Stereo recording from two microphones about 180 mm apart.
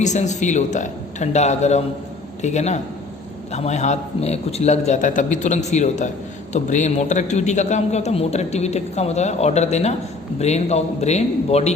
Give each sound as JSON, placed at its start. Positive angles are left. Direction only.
{"t": 0.0, "sound": "a man's voice", "side_deg": 40}